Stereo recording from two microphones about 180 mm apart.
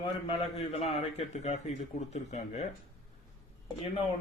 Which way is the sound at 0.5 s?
35° left (ahead or behind).